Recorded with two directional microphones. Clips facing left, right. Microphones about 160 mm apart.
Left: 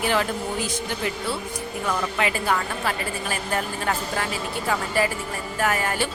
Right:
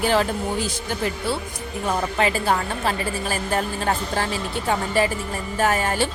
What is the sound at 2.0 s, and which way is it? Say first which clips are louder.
A woman's voice: right 3 dB; 35° right (ahead or behind).